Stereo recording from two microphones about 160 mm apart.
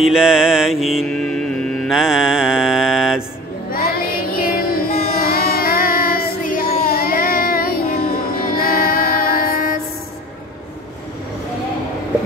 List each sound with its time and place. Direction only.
0.0 s mantra: 5° right (ahead or behind)
3.7 s child singing: 65° left (ahead or behind)